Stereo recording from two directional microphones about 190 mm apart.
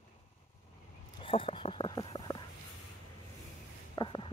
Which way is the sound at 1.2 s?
30° left (ahead or behind).